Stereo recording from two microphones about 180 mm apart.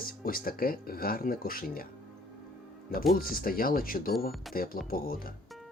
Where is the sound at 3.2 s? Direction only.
55° left (ahead or behind).